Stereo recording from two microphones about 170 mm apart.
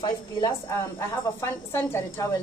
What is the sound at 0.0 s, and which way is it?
A woman's voice, 20° left (ahead or behind).